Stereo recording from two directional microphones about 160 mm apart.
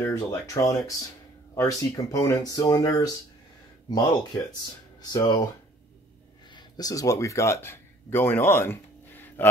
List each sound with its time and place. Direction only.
0.0 s speech: 15° left (ahead or behind)
6.5 s speech: 20° left (ahead or behind)